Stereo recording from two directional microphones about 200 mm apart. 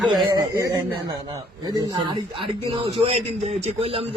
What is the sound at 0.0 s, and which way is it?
Speech, centre (ahead or behind).